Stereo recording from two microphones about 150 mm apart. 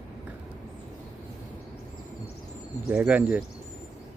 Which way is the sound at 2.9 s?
10° right (ahead or behind).